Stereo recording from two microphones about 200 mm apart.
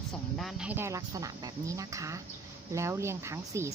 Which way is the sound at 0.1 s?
Centre (ahead or behind).